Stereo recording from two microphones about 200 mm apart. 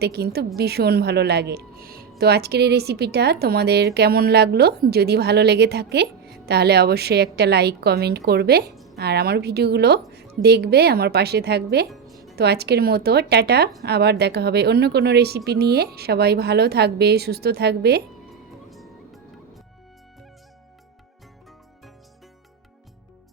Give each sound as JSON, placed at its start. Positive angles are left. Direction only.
{"t": 0.0, "sound": "a woman's voice", "side_deg": -55}
{"t": 18.7, "sound": "music", "side_deg": 0}